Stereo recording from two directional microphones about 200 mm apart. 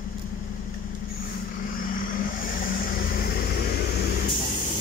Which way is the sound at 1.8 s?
45° left (ahead or behind).